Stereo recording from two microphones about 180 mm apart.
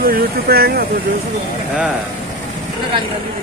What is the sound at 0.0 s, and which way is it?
Speech, 55° right (ahead or behind).